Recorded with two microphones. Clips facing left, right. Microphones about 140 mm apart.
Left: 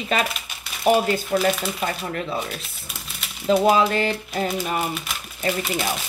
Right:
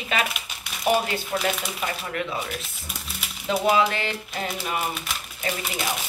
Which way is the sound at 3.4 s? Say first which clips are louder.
Left 4 dB; 40° left (ahead or behind).